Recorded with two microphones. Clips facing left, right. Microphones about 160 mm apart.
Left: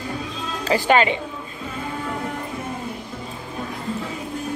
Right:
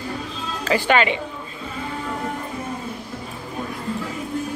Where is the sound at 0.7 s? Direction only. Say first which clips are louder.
Left 1 dB; 35° left (ahead or behind).